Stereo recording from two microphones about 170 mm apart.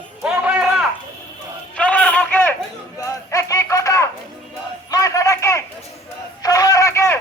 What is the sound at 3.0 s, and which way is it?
Run, 20° left (ahead or behind).